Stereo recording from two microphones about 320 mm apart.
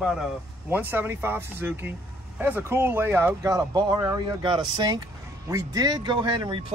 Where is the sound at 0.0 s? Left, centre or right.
Centre.